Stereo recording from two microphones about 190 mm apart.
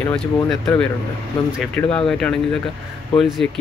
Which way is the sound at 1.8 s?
5° left (ahead or behind).